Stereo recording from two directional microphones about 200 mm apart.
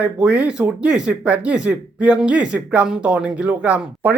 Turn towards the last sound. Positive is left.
turn(degrees=-5)  # may be behind; listen again after turning